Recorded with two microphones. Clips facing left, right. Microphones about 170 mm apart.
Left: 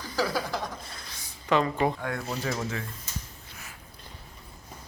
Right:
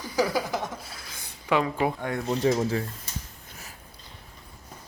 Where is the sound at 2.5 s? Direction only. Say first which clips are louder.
Right 7 dB; 35° right (ahead or behind).